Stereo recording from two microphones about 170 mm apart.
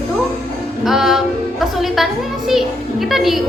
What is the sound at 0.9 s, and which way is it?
Speech, centre (ahead or behind).